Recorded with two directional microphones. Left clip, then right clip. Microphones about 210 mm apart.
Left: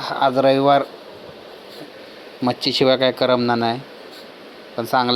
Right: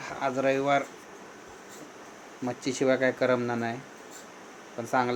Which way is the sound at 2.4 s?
35° left (ahead or behind).